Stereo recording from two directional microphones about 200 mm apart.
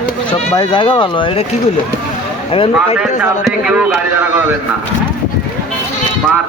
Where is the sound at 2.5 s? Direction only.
25° left (ahead or behind).